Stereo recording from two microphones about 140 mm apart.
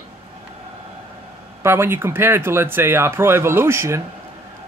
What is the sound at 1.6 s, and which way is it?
Speech, 15° right (ahead or behind).